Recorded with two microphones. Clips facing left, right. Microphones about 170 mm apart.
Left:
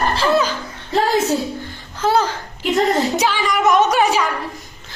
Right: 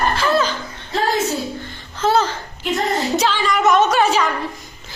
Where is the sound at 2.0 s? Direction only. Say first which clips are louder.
Even; 10° left (ahead or behind).